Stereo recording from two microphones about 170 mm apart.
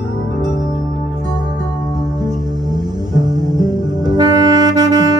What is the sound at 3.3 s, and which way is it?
Saxophone, 25° right (ahead or behind).